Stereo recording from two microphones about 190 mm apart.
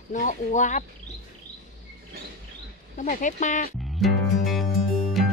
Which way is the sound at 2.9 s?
40° left (ahead or behind).